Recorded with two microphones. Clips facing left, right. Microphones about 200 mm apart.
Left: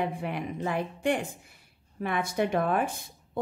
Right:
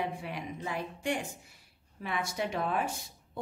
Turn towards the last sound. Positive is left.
turn(degrees=55)  # may be behind; listen again after turning